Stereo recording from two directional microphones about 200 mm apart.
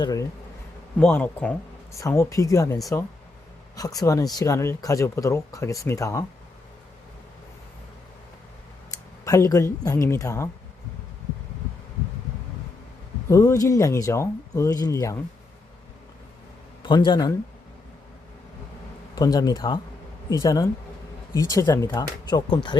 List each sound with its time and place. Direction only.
0.0 s speech: 20° left (ahead or behind)
9.2 s speech: 15° left (ahead or behind)
13.2 s speech: 15° left (ahead or behind)
16.8 s speech: 25° left (ahead or behind)
19.1 s speech: 20° left (ahead or behind)